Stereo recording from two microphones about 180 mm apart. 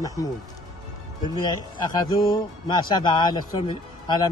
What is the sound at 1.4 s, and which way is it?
Speech, 25° left (ahead or behind).